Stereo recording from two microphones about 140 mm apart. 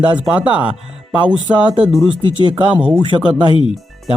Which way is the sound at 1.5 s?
35° right (ahead or behind).